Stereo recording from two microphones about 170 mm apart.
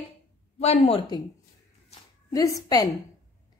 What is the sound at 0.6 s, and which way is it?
Speech, 35° left (ahead or behind).